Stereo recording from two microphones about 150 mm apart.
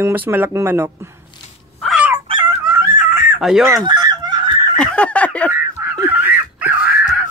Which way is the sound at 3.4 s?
Centre (ahead or behind).